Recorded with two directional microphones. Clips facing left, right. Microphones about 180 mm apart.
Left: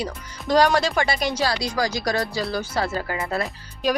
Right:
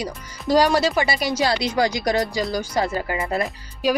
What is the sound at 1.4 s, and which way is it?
Speech, 20° right (ahead or behind).